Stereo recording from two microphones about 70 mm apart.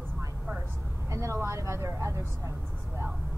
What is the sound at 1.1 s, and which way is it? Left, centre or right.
Vehicle, right.